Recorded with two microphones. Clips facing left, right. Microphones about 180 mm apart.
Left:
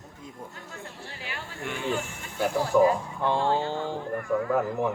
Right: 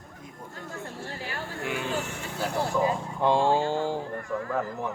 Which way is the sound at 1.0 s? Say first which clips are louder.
Right 4 dB; 40° right (ahead or behind).